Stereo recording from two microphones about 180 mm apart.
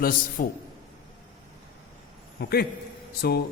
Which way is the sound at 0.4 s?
50° left (ahead or behind).